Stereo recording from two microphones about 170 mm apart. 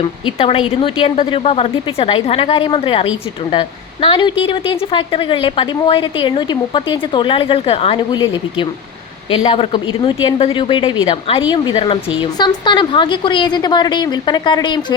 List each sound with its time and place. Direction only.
0.3 s a woman's voice: 35° left (ahead or behind)